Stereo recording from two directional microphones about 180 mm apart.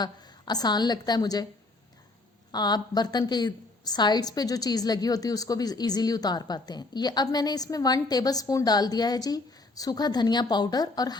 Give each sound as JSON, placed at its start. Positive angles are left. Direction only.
{"t": 0.0, "sound": "a woman's voice", "side_deg": 20}
{"t": 2.5, "sound": "a woman's voice", "side_deg": 25}